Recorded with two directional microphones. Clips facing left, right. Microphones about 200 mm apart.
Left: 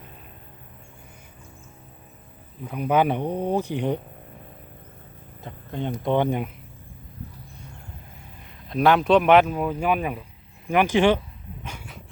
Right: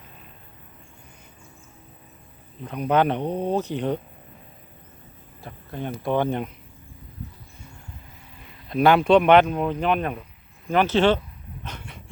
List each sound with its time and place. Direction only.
2.6 s speech: 5° left (ahead or behind)
5.4 s speech: 20° left (ahead or behind)
8.4 s speech: centre (ahead or behind)
11.6 s a sound: 10° left (ahead or behind)